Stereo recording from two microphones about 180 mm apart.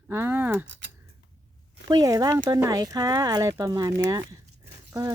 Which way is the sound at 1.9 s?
20° right (ahead or behind).